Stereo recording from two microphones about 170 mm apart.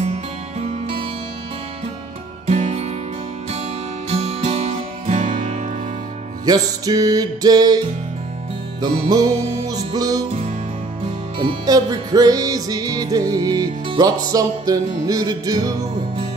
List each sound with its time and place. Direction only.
0.0 s music: 40° right (ahead or behind)
2.4 s music: 40° right (ahead or behind)
4.1 s music: 35° right (ahead or behind)
6.4 s music: 20° right (ahead or behind)
8.8 s music: 20° right (ahead or behind)
11.3 s music: 20° right (ahead or behind)